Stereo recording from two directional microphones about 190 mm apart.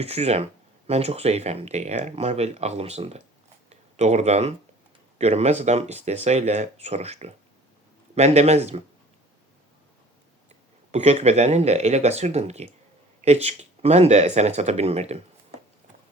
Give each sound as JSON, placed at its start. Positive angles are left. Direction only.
{"t": 0.0, "sound": "speech", "side_deg": -35}
{"t": 10.9, "sound": "speech", "side_deg": -35}